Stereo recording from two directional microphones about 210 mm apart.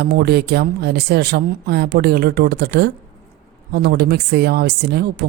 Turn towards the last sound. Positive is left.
turn(degrees=-50)  # may be behind; listen again after turning